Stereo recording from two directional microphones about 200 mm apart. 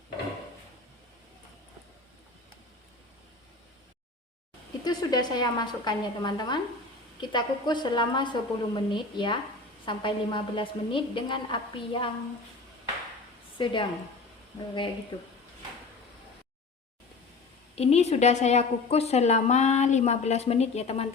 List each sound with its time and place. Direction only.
4.8 s a woman's voice: 20° left (ahead or behind)
13.6 s a woman's voice: 25° left (ahead or behind)
15.1 s a woman's voice: 20° left (ahead or behind)
17.7 s a woman's voice: 30° left (ahead or behind)